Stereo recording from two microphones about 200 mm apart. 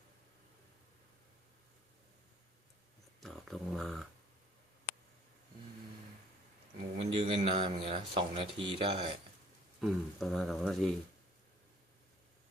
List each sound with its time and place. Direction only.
3.2 s speech: centre (ahead or behind)
6.9 s speech: 30° right (ahead or behind)
9.8 s speech: centre (ahead or behind)